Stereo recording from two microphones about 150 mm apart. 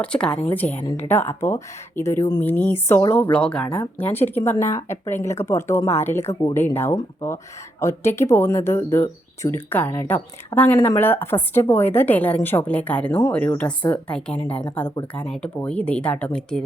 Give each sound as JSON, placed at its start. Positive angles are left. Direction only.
{"t": 0.0, "sound": "speech", "side_deg": 5}